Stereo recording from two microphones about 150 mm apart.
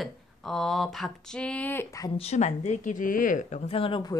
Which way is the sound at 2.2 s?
50° left (ahead or behind).